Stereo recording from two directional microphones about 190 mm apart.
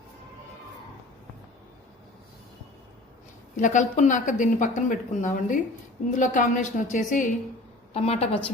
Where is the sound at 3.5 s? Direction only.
40° left (ahead or behind).